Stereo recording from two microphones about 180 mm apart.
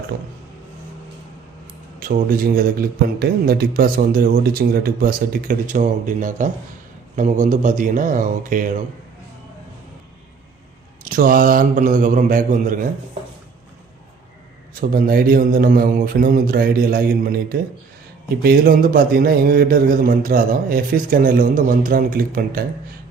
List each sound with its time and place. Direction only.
2.0 s speech: 50° right (ahead or behind)
11.1 s speech: 50° right (ahead or behind)
14.8 s speech: 50° right (ahead or behind)